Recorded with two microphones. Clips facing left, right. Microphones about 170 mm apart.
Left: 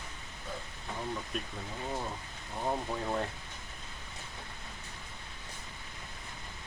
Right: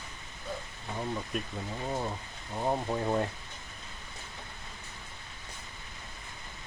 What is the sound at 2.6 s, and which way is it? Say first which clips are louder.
Speech: right 4 dB; 20° right (ahead or behind).